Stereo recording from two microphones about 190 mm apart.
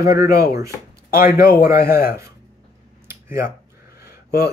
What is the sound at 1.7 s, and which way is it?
Speech, 55° left (ahead or behind).